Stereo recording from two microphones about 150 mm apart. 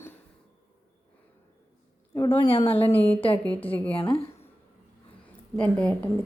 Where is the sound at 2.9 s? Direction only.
10° left (ahead or behind).